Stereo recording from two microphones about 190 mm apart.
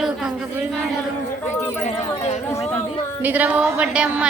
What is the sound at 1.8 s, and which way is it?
Speech, 35° left (ahead or behind).